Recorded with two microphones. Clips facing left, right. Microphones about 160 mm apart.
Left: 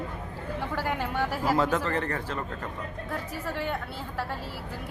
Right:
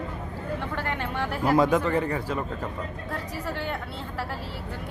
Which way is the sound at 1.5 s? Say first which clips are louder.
Right 7 dB; 15° right (ahead or behind).